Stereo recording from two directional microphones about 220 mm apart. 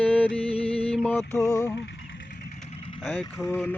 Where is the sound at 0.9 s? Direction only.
5° left (ahead or behind).